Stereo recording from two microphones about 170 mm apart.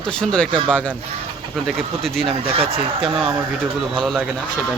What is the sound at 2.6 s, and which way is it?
Speech, 35° right (ahead or behind).